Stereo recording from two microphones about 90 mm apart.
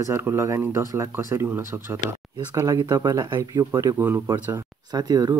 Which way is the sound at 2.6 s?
45° right (ahead or behind).